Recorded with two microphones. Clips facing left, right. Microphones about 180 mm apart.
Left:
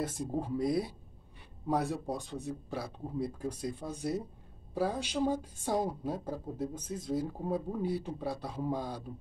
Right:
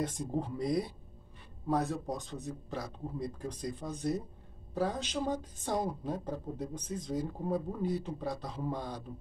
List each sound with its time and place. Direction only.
0.0 s a woman's voice: 5° left (ahead or behind)